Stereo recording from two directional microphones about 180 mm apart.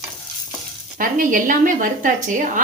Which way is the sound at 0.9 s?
50° right (ahead or behind).